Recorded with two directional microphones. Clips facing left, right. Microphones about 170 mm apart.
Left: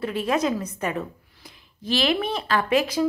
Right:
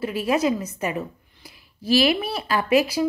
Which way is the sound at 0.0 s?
5° right (ahead or behind).